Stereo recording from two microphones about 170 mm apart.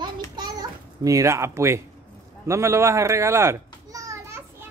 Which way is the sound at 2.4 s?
15° right (ahead or behind).